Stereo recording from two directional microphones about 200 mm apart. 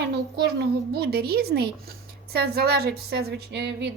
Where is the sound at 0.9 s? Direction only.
55° right (ahead or behind).